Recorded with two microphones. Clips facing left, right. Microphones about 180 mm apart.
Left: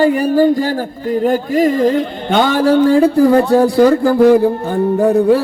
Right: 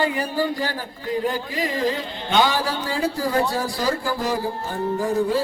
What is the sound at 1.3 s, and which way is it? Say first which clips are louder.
A man's voice: left 13 dB; 50° left (ahead or behind).